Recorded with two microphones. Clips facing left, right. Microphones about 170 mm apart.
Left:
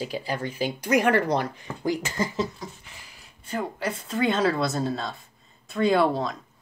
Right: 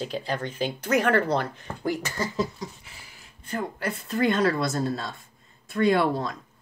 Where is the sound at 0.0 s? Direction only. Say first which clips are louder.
Even; 10° left (ahead or behind).